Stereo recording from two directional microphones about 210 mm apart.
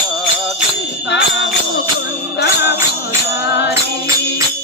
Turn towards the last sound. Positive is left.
turn(degrees=55)  # may be behind; listen again after turning